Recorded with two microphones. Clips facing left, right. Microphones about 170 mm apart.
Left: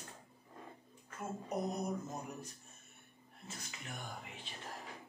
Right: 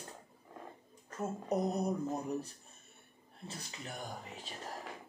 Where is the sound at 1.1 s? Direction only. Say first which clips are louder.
Right 7 dB; 40° right (ahead or behind).